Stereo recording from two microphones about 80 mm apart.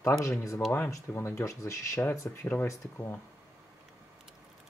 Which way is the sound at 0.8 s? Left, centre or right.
Left.